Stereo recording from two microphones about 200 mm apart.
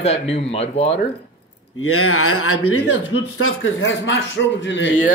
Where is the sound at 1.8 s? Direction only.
90° left; by 4.9 s 70° left (ahead or behind).